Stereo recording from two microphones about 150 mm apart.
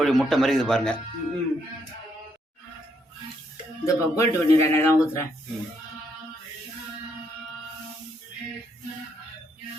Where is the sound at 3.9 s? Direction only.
20° left (ahead or behind).